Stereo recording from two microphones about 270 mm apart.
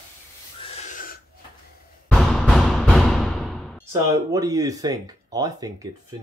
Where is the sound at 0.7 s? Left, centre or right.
Left.